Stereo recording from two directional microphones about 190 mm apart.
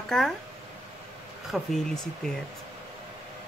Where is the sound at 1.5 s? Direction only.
Centre (ahead or behind).